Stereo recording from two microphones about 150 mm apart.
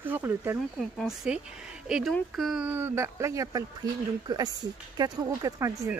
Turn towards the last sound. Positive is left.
turn(degrees=-20)  # may be behind; listen again after turning